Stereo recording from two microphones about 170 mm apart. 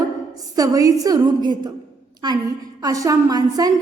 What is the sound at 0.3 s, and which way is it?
A woman's voice, 20° right (ahead or behind).